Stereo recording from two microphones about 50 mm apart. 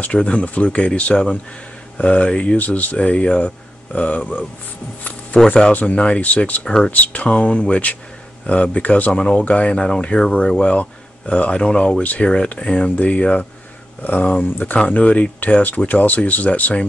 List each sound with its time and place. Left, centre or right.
0.0 s speech: left
2.5 s speech: left; by 5.5 s centre
5.7 s speech: left
6.6 s speech: centre
6.9 s speech: left
9.1 s speech: centre